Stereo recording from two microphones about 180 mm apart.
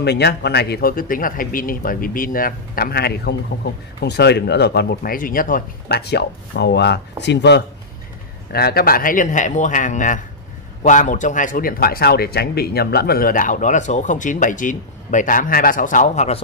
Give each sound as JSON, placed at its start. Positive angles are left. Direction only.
{"t": 0.0, "sound": "speech", "side_deg": 65}
{"t": 8.5, "sound": "speech", "side_deg": 60}